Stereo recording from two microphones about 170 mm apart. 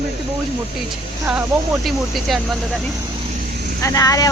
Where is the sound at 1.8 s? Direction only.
Centre (ahead or behind).